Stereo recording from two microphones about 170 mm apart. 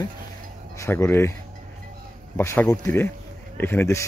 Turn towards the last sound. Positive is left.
turn(degrees=15)  # may be behind; listen again after turning